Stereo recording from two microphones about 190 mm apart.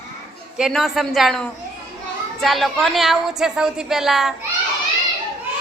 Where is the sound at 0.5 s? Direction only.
Centre (ahead or behind).